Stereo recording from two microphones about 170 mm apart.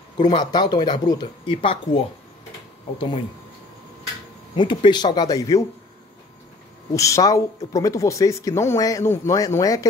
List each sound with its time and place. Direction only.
0.2 s speech: 25° left (ahead or behind)
4.6 s speech: 30° left (ahead or behind)
6.9 s speech: 20° left (ahead or behind)